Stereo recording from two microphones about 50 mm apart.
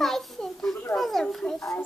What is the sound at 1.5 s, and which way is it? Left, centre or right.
Speech, left.